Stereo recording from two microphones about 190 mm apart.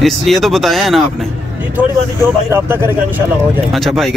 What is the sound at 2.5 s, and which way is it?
Speech, 10° right (ahead or behind).